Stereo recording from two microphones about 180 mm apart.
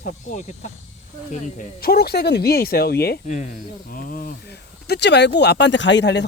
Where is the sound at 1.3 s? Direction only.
50° left (ahead or behind).